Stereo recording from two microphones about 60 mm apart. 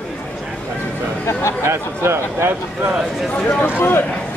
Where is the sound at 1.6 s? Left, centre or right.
Right.